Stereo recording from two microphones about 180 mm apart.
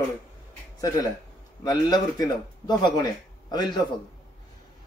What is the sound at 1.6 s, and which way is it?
Speech, 20° left (ahead or behind).